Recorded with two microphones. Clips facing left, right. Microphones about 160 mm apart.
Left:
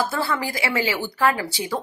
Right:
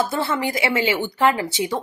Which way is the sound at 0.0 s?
20° right (ahead or behind).